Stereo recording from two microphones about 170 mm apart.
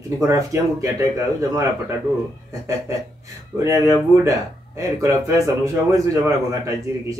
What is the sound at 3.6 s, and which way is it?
Speech, 20° right (ahead or behind).